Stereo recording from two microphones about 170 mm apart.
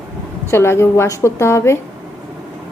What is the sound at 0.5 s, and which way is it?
A woman's voice, 15° left (ahead or behind).